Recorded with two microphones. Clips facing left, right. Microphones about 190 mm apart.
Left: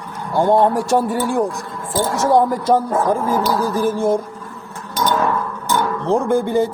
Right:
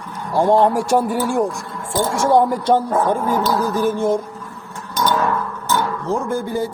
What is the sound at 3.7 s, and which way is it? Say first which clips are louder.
Speech: even; 10° left (ahead or behind).